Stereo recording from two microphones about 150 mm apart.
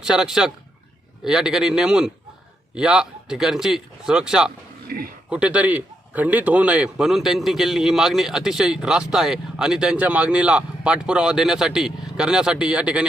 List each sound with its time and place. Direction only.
0.0 s a man's voice: 5° right (ahead or behind)
4.9 s a man's voice: 80° right
5.3 s a man's voice: 10° right (ahead or behind)